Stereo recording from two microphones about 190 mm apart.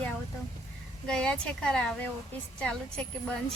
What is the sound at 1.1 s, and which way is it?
Speech, 5° left (ahead or behind).